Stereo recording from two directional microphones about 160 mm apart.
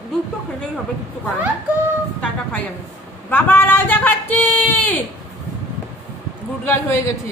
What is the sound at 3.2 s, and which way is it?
Speech, 15° left (ahead or behind).